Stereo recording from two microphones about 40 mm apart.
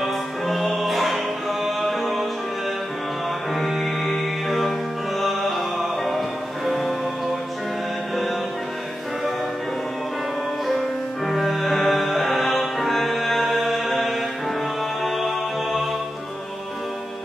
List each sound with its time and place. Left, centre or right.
0.0 s music: centre
3.5 s music: centre
10.7 s music: centre